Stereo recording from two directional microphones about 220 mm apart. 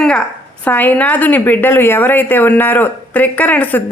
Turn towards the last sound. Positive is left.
turn(degrees=5)  # may be behind; listen again after turning